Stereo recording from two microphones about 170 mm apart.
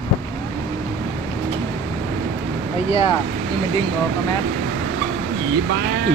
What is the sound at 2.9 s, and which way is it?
Speech, 35° left (ahead or behind).